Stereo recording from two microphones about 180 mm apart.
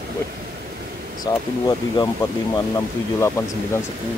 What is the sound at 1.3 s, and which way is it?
Speech, 20° left (ahead or behind).